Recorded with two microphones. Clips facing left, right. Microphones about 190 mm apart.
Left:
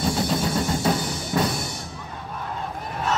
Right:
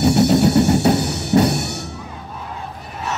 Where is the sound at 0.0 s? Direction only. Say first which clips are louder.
Right 10 dB; 70° right (ahead or behind).